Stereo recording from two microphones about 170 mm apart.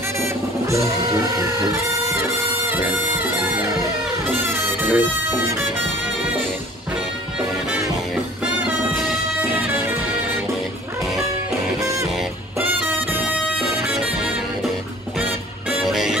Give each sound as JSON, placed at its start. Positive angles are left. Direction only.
{"t": 1.7, "sound": "music", "side_deg": -15}
{"t": 9.4, "sound": "music", "side_deg": -10}
{"t": 11.8, "sound": "music", "side_deg": -20}